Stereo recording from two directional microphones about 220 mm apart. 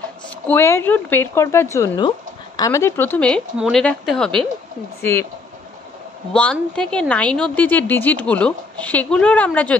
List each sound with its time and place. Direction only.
0.5 s speech: 10° left (ahead or behind)
6.3 s speech: 5° left (ahead or behind)